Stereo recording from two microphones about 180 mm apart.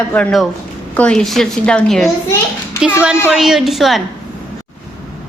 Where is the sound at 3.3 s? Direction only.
5° right (ahead or behind).